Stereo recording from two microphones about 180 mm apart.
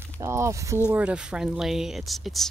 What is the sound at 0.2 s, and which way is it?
Speech, 15° right (ahead or behind).